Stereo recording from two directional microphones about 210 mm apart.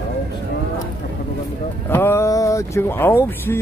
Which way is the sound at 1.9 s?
10° left (ahead or behind).